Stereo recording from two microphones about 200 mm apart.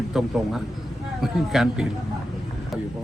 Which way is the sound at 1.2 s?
Centre (ahead or behind).